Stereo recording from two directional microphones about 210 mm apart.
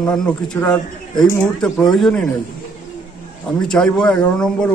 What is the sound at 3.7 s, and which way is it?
A man's voice, 5° left (ahead or behind).